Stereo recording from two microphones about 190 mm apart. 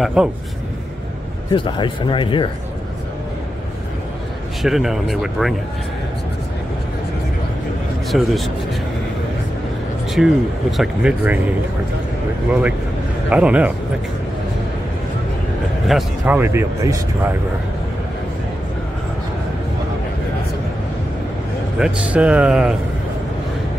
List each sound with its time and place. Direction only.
0.0 s speech: 5° right (ahead or behind)
1.5 s speech: 25° left (ahead or behind)
4.6 s speech: centre (ahead or behind)
8.1 s speech: centre (ahead or behind)
10.2 s speech: 5° right (ahead or behind)
13.3 s speech: 5° right (ahead or behind)
15.9 s a man's voice: centre (ahead or behind)
16.3 s speech: 15° right (ahead or behind)
21.7 s speech: 5° right (ahead or behind)